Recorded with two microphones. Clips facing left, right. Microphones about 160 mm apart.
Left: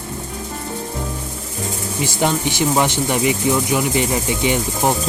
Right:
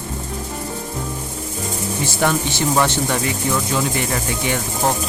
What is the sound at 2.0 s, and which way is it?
Speech, 15° left (ahead or behind).